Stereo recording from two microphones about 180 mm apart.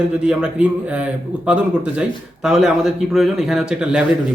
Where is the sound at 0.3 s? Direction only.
5° right (ahead or behind).